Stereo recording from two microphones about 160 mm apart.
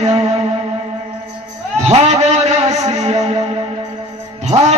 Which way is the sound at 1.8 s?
45° right (ahead or behind).